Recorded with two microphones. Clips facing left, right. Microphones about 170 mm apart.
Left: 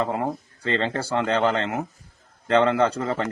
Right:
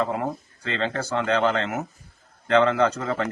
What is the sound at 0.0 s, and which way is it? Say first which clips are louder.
A man's voice: left 1 dB; 30° left (ahead or behind).